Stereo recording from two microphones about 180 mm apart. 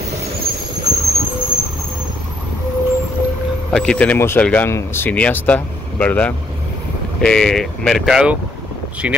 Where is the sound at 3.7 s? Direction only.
5° left (ahead or behind).